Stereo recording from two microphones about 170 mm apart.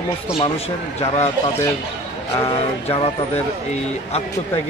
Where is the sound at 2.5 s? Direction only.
35° left (ahead or behind).